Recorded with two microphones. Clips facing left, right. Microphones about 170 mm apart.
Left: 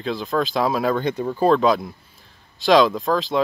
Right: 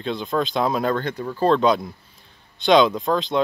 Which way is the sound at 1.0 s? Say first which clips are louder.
Left 4 dB; 20° left (ahead or behind).